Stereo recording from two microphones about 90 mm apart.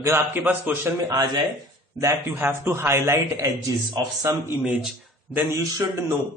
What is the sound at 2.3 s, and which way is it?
Speech, 25° right (ahead or behind).